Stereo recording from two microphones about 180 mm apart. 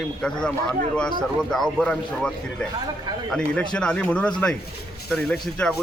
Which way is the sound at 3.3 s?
5° left (ahead or behind).